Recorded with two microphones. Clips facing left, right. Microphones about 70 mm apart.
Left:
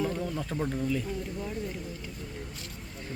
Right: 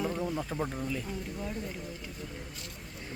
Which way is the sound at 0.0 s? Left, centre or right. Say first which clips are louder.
Left 1 dB; centre.